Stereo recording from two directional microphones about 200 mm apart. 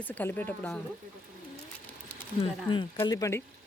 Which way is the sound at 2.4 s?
25° left (ahead or behind).